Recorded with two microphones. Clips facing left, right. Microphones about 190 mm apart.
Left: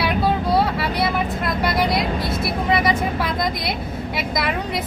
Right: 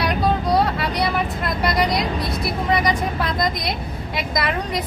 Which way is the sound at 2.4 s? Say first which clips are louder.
Even; 5° left (ahead or behind).